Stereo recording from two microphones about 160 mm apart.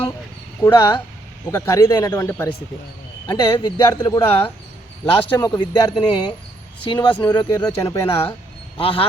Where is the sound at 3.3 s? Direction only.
30° left (ahead or behind).